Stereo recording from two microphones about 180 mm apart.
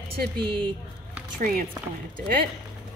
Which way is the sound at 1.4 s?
50° right (ahead or behind).